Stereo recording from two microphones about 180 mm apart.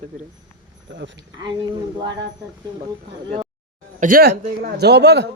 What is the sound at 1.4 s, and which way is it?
Speech, 25° right (ahead or behind).